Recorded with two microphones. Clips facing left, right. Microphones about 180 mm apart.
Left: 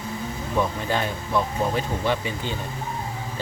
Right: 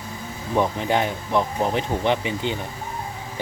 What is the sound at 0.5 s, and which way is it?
Speech, 20° right (ahead or behind).